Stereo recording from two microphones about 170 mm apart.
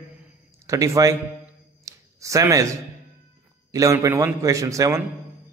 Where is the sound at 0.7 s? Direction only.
20° right (ahead or behind).